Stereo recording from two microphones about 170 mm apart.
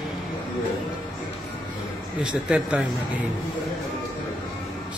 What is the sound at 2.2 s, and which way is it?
Speech, 5° right (ahead or behind).